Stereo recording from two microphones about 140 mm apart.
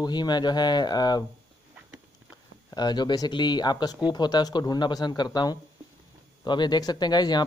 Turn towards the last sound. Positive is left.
turn(degrees=30)  # may be behind; listen again after turning